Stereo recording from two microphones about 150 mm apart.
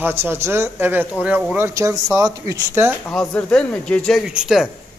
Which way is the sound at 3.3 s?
5° left (ahead or behind).